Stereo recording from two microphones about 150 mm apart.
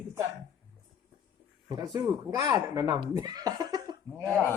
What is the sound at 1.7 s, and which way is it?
A man's voice, 25° right (ahead or behind).